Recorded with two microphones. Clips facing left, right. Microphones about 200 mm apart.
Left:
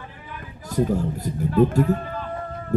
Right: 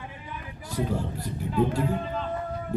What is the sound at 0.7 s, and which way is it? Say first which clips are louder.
Speech: left 7 dB; 45° left (ahead or behind).